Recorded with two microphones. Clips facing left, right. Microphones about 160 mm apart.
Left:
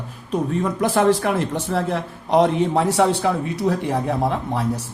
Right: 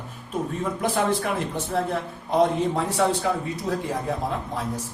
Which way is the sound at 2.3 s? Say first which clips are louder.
Left 4 dB; 85° left.